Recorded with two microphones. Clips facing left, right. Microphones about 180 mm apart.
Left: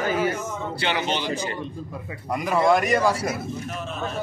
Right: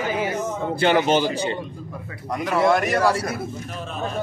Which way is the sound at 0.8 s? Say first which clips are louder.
Right 8 dB; 45° right (ahead or behind).